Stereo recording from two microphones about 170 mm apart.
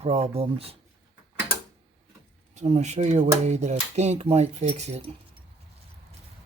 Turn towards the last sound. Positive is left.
turn(degrees=-40)  # may be behind; listen again after turning